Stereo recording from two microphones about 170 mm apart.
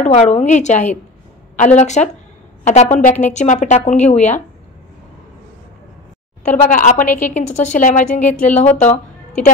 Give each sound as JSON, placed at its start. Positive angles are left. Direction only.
{"t": 0.0, "sound": "a woman's voice", "side_deg": 40}
{"t": 6.5, "sound": "a woman's voice", "side_deg": 50}
{"t": 7.1, "sound": "speech", "side_deg": 10}
{"t": 7.3, "sound": "a woman's voice", "side_deg": 45}
{"t": 8.2, "sound": "speech", "side_deg": 10}
{"t": 8.5, "sound": "a woman's voice", "side_deg": 40}